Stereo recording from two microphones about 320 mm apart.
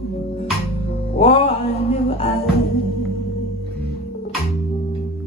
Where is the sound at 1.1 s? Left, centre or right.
Centre.